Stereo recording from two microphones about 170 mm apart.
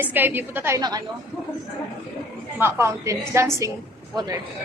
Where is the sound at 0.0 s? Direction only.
10° right (ahead or behind).